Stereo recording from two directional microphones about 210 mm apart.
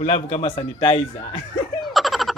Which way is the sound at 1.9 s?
Centre (ahead or behind).